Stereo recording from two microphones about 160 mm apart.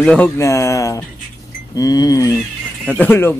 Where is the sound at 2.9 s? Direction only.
10° left (ahead or behind).